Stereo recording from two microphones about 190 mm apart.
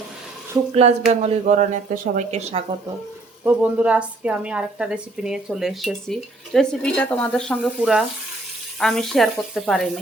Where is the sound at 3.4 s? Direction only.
5° right (ahead or behind); by 7.6 s 10° left (ahead or behind).